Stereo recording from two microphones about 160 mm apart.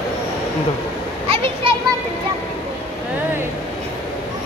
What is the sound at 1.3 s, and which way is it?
Children playing, 35° right (ahead or behind).